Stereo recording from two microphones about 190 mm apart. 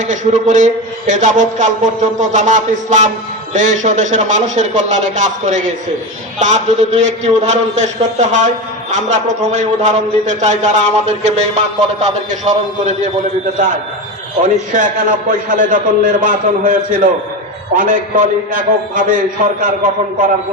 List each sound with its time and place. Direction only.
0.0 s a man's voice: 40° right (ahead or behind)
14.4 s a man's voice: 40° right (ahead or behind)